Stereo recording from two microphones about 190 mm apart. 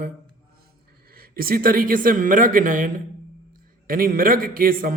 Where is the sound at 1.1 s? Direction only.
50° right (ahead or behind).